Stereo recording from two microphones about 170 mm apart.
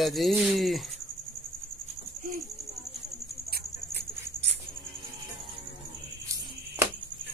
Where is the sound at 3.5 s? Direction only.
65° right (ahead or behind).